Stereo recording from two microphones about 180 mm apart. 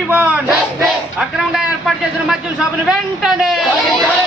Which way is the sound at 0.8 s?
Centre (ahead or behind).